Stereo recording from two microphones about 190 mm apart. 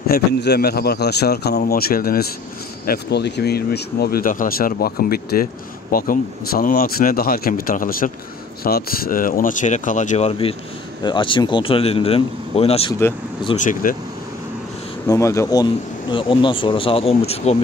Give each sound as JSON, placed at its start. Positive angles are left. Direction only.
{"t": 0.0, "sound": "a man's voice", "side_deg": 55}
{"t": 11.0, "sound": "speech", "side_deg": 25}
{"t": 13.6, "sound": "speech", "side_deg": 45}
{"t": 15.0, "sound": "speech", "side_deg": 15}